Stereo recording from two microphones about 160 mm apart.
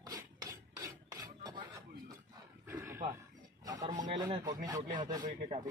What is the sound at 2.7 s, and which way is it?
Wild animals, 15° right (ahead or behind).